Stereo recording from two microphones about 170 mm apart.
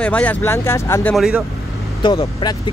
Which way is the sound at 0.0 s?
10° left (ahead or behind).